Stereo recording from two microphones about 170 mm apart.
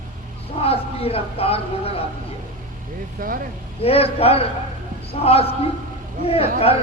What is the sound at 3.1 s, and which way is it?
Speech, 55° right (ahead or behind).